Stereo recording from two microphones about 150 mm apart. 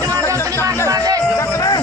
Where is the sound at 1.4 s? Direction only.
25° left (ahead or behind).